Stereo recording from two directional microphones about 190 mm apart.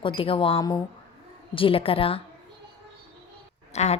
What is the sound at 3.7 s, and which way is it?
Speech, 35° left (ahead or behind).